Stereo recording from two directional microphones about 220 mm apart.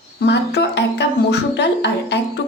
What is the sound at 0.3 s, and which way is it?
Speech, 50° left (ahead or behind).